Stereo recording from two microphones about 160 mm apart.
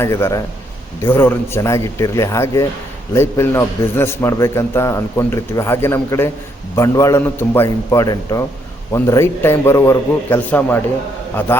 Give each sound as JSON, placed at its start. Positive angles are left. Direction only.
{"t": 0.0, "sound": "a man's voice", "side_deg": 15}